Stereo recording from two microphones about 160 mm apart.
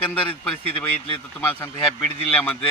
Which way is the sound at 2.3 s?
5° left (ahead or behind).